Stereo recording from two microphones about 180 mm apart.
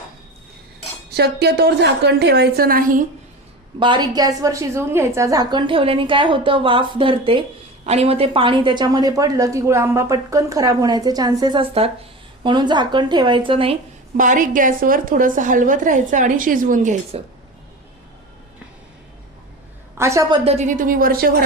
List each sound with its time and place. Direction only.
1.1 s a woman's voice: 65° right (ahead or behind)
3.8 s a woman's voice: 25° right (ahead or behind)
14.2 s a woman's voice: 45° right (ahead or behind)
20.0 s a woman's voice: 15° right (ahead or behind)
20.4 s a woman's voice: 35° right (ahead or behind); by 21.3 s 50° right (ahead or behind)